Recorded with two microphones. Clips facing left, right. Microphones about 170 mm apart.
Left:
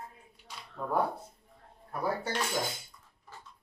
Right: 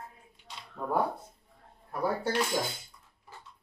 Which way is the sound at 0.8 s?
5° right (ahead or behind).